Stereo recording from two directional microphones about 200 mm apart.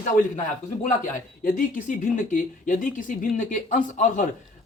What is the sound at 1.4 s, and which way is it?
Speech, 40° left (ahead or behind).